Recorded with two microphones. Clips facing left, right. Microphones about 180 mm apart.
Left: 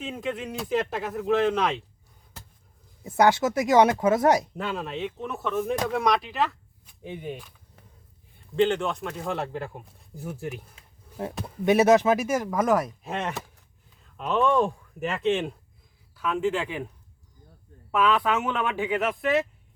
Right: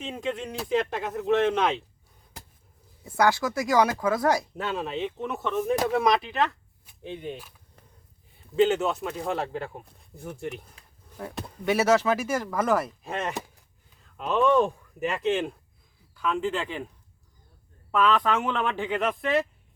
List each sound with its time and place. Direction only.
0.0 s speech: centre (ahead or behind)
3.0 s speech: 20° left (ahead or behind)
4.8 s speech: centre (ahead or behind)
7.3 s a sound: 5° right (ahead or behind)
8.5 s speech: 5° right (ahead or behind)
10.8 s a sound: 25° left (ahead or behind)
11.6 s speech: 20° left (ahead or behind)
12.8 s speech: centre (ahead or behind)
17.9 s speech: 10° left (ahead or behind)